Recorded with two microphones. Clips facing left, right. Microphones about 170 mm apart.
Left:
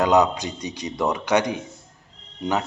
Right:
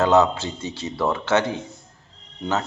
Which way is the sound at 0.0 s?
15° left (ahead or behind).